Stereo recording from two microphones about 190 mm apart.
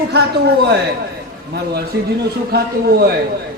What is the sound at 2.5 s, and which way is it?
Speech, 55° right (ahead or behind).